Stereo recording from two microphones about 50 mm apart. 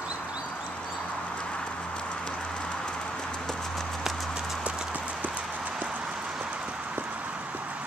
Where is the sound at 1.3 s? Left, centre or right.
Centre.